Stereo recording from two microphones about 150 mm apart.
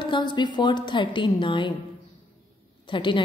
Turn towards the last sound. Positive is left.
turn(degrees=30)  # may be behind; listen again after turning